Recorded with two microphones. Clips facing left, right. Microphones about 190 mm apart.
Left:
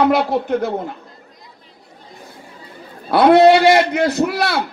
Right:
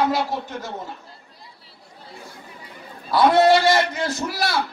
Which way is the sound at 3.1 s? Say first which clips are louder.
Left 6 dB; 60° left (ahead or behind).